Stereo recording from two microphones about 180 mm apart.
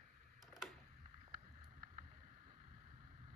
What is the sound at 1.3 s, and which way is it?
Vehicle, 45° right (ahead or behind).